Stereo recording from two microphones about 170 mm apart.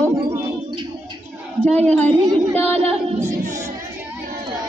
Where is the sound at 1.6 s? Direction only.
5° left (ahead or behind).